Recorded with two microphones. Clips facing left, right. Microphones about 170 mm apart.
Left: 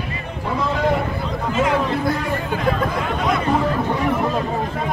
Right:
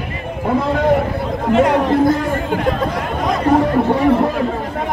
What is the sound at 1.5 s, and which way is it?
Speech, 60° right (ahead or behind).